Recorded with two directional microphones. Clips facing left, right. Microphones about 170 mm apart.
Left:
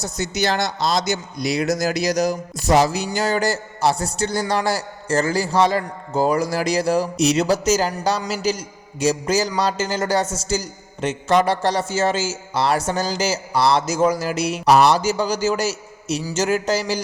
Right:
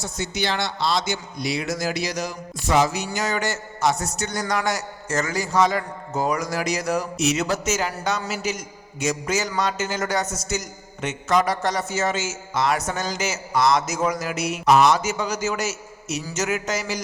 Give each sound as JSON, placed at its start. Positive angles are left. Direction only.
{"t": 0.0, "sound": "speech", "side_deg": 40}